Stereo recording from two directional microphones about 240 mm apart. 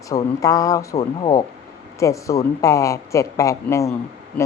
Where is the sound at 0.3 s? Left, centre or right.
Centre.